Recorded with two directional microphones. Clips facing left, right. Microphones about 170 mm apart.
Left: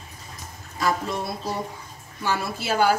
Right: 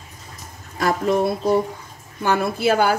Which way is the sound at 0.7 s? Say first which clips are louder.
Right 6 dB; 60° right (ahead or behind).